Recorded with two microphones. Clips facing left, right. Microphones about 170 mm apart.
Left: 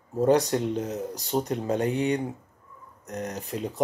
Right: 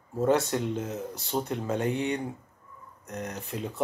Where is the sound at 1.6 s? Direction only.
35° left (ahead or behind).